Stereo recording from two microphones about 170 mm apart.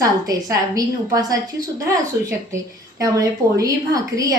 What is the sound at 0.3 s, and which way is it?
A woman's voice, 20° right (ahead or behind).